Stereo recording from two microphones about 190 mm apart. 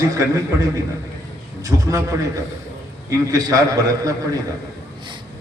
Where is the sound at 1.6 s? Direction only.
15° right (ahead or behind).